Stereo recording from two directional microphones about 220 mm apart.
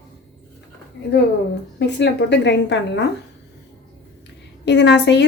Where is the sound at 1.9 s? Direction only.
50° left (ahead or behind).